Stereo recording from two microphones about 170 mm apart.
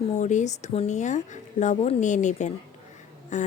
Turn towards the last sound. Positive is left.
turn(degrees=45)  # may be behind; listen again after turning